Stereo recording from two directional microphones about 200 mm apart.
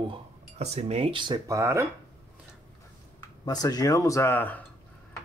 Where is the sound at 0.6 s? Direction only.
35° right (ahead or behind); by 1.9 s 15° right (ahead or behind).